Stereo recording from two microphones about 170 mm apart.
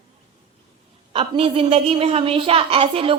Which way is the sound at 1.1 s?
30° right (ahead or behind).